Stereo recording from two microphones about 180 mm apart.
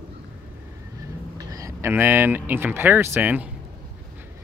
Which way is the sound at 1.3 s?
20° right (ahead or behind).